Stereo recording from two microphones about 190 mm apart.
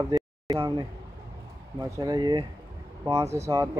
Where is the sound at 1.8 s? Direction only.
20° right (ahead or behind).